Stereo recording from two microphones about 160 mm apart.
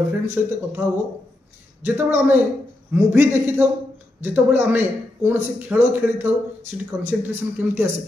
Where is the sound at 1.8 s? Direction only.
10° right (ahead or behind).